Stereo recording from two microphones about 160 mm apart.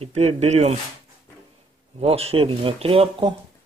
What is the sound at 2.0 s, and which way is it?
Speech, 35° right (ahead or behind).